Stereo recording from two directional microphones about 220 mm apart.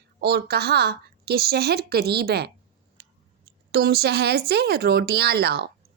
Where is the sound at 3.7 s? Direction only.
45° right (ahead or behind).